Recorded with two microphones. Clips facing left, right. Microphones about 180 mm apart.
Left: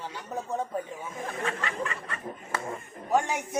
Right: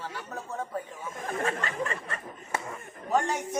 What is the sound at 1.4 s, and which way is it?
Snicker, 40° right (ahead or behind).